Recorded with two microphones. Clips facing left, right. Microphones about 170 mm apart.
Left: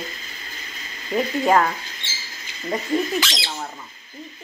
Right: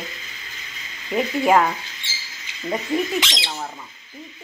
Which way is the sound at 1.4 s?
10° right (ahead or behind).